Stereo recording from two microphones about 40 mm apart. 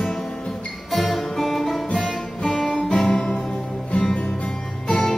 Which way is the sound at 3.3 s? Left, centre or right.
Centre.